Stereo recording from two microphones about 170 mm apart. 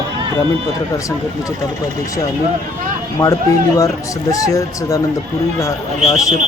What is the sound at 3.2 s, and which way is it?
Speech, 20° left (ahead or behind).